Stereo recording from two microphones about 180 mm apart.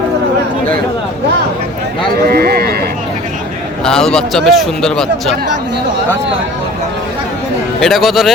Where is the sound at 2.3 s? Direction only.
60° right (ahead or behind).